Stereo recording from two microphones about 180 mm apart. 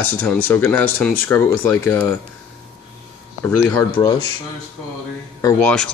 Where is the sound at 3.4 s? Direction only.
10° left (ahead or behind).